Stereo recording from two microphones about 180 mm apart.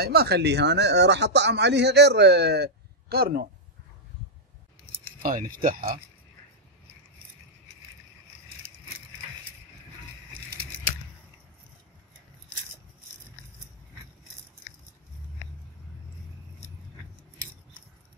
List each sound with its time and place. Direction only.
0.0 s speech: 60° right (ahead or behind)
5.2 s speech: 50° right (ahead or behind)